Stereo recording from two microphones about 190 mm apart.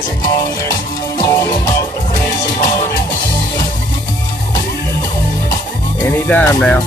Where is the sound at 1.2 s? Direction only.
20° left (ahead or behind).